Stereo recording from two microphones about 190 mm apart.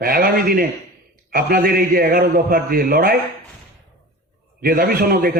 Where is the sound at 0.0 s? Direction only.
50° right (ahead or behind).